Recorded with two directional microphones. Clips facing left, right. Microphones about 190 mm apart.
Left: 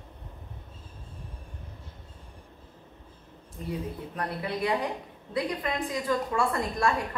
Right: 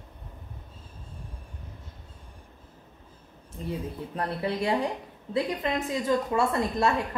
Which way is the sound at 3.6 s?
25° right (ahead or behind).